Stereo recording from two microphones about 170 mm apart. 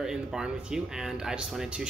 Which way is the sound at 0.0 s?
5° right (ahead or behind).